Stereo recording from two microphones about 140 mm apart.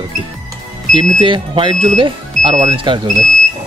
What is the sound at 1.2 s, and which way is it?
Speech, 35° right (ahead or behind).